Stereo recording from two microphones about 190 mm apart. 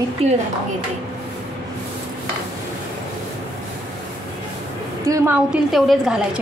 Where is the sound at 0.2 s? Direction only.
30° right (ahead or behind).